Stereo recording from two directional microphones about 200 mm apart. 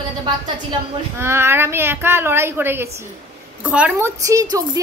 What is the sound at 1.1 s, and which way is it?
A woman's voice, 10° right (ahead or behind).